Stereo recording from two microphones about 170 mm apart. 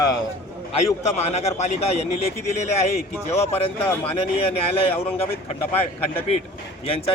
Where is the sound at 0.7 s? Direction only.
35° left (ahead or behind).